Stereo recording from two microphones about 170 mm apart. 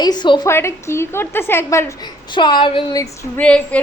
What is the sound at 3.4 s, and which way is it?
Speech, 5° left (ahead or behind).